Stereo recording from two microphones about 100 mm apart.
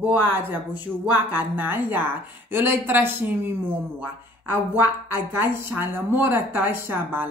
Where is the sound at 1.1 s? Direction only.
20° right (ahead or behind).